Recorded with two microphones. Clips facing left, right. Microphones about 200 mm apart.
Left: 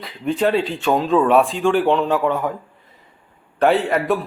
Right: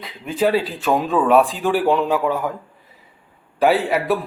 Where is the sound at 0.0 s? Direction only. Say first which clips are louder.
Left 1 dB; centre (ahead or behind).